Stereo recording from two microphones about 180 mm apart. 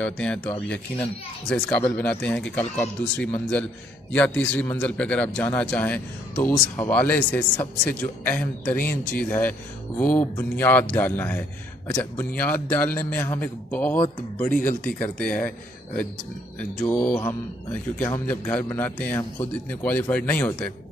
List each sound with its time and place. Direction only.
0.0 s speech: 5° left (ahead or behind)
14.5 s speech: 45° left (ahead or behind)
14.8 s speech: 5° left (ahead or behind)
16.5 s speech: 10° left (ahead or behind)